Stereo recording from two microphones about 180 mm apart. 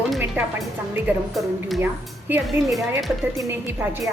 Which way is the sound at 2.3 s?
10° right (ahead or behind).